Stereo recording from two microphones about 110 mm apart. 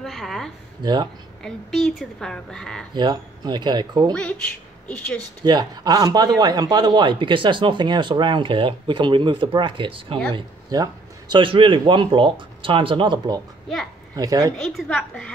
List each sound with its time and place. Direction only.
0.0 s a sound: centre (ahead or behind)
1.4 s a woman's voice: 5° left (ahead or behind)
2.9 s a man's voice: 40° right (ahead or behind)
4.1 s speech: 10° left (ahead or behind)
5.4 s a man's voice: 40° right (ahead or behind)
10.7 s a man's voice: 40° right (ahead or behind)
14.1 s a woman's voice: 30° right (ahead or behind)
14.6 s a woman's voice: 5° left (ahead or behind)